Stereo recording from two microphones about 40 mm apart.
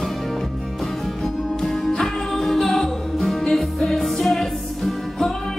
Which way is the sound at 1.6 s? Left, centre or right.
Centre.